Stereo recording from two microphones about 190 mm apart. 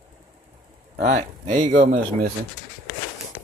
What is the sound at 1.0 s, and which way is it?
Speech, 40° right (ahead or behind).